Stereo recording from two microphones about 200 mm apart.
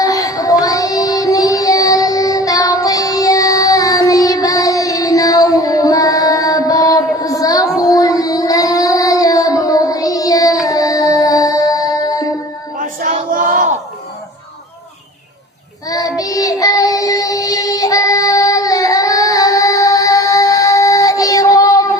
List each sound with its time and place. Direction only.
0.0 s child singing: 15° left (ahead or behind)
12.8 s a sound: 40° right (ahead or behind)
15.9 s child singing: 15° left (ahead or behind)